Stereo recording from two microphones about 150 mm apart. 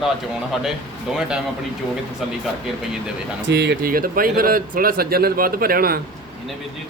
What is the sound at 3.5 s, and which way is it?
Speech, 85° right.